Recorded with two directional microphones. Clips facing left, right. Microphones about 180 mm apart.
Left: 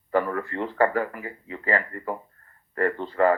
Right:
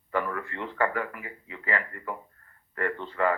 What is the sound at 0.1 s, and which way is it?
Speech, 35° left (ahead or behind).